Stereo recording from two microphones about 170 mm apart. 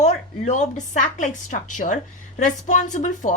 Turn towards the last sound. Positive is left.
turn(degrees=45)  # may be behind; listen again after turning